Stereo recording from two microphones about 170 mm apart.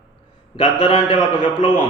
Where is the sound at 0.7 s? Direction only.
30° left (ahead or behind).